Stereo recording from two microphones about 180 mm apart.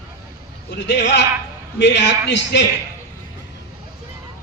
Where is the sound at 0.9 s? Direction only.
70° left (ahead or behind).